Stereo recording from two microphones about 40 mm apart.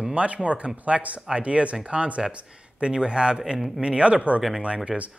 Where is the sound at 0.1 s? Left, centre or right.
Right.